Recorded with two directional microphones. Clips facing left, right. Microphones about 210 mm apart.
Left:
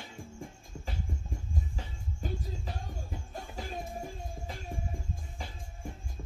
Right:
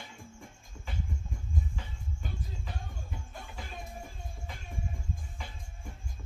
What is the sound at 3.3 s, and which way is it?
Music, 40° left (ahead or behind).